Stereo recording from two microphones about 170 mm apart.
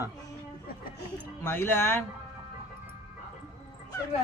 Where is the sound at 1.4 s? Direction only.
10° left (ahead or behind).